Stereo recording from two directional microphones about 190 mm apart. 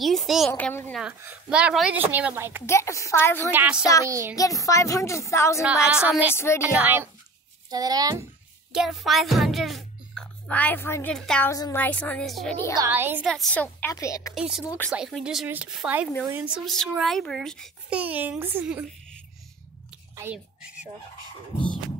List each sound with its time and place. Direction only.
0.0 s a child's voice: centre (ahead or behind)
1.0 s a woman's voice: 5° right (ahead or behind)
2.6 s speech: 15° left (ahead or behind)
3.5 s a woman's voice: 5° right (ahead or behind)
4.4 s speech: 15° left (ahead or behind)
5.6 s a child's voice: 5° right (ahead or behind)
6.3 s speech: 15° left (ahead or behind)
6.6 s a woman's voice: 10° right (ahead or behind)
8.7 s a child's voice: centre (ahead or behind)
12.7 s a woman's voice: 15° right (ahead or behind)
13.3 s speech: 5° left (ahead or behind)
14.3 s a child's voice: 5° right (ahead or behind)
20.2 s speech: 10° right (ahead or behind)